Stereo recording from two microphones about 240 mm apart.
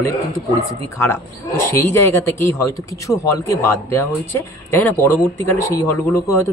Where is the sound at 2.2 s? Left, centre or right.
Centre.